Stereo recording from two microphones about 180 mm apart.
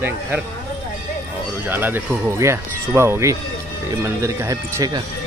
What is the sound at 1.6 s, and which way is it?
Speech, 10° right (ahead or behind).